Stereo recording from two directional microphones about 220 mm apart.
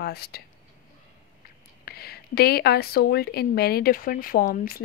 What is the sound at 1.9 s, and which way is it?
A woman's voice, 45° left (ahead or behind).